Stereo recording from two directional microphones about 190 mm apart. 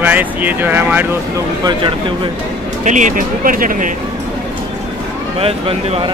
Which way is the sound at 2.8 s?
40° right (ahead or behind).